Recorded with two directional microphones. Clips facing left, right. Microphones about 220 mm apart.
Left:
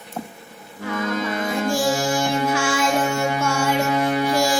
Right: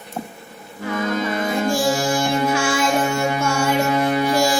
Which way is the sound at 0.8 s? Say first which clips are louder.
Right 2 dB; 30° right (ahead or behind).